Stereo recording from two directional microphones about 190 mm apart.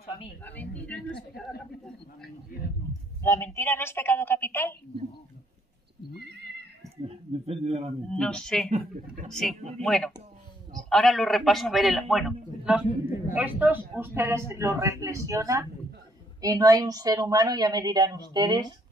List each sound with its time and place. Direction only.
0.4 s a woman's voice: 10° left (ahead or behind)
3.2 s a woman's voice: 10° left (ahead or behind)
6.2 s neigh: 60° right (ahead or behind)
7.1 s a man's voice: 35° right (ahead or behind)
8.1 s a man's voice: 5° left (ahead or behind)
8.6 s speech: 40° right (ahead or behind)
9.3 s a man's voice: centre (ahead or behind); by 18.8 s 20° right (ahead or behind)